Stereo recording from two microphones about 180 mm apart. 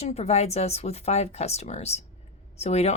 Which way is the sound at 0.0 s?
35° left (ahead or behind).